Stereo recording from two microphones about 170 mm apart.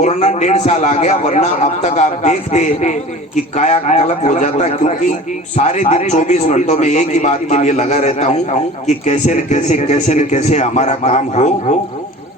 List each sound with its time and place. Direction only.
0.0 s a man's voice: 40° left (ahead or behind)